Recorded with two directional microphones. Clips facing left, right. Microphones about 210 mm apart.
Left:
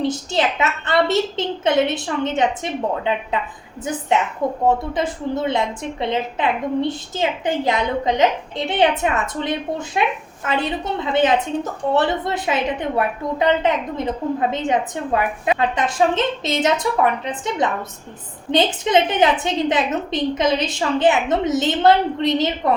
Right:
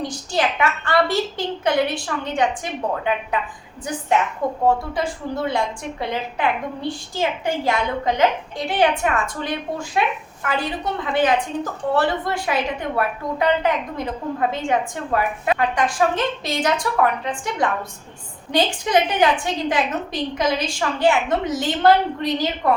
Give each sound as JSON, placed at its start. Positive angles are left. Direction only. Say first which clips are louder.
{"t": 0.0, "sound": "a woman's voice", "louder": "left 3 dB", "side_deg": 25}
{"t": 4.6, "sound": "a woman's voice", "louder": "even", "side_deg": 20}